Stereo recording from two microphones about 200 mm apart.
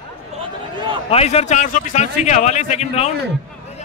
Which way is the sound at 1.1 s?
30° left (ahead or behind).